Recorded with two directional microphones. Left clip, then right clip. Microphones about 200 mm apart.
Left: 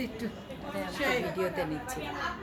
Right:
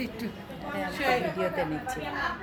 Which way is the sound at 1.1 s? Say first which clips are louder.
Right 4 dB; centre (ahead or behind).